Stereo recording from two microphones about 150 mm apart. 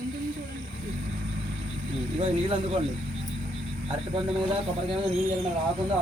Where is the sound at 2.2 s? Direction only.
40° right (ahead or behind).